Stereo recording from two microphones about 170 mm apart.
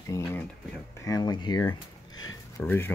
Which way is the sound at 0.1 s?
15° left (ahead or behind).